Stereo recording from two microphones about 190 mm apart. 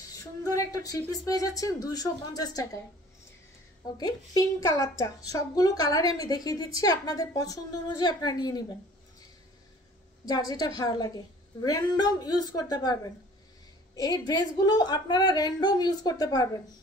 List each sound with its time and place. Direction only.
0.1 s speech: 20° left (ahead or behind)
4.0 s a woman's voice: 20° left (ahead or behind)
10.5 s a woman's voice: 20° left (ahead or behind)